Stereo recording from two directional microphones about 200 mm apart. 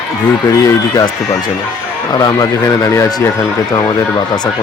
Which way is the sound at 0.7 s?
20° left (ahead or behind).